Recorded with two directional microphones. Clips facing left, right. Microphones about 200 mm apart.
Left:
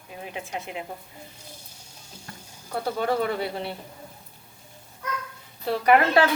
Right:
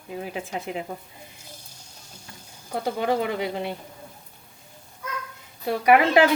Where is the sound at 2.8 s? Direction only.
15° right (ahead or behind).